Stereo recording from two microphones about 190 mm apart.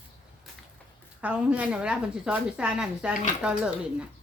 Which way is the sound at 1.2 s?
5° right (ahead or behind).